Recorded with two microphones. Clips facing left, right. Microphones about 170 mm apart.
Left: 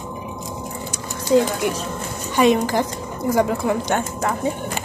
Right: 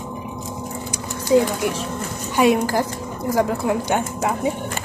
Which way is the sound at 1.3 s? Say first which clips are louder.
Even; 5° right (ahead or behind).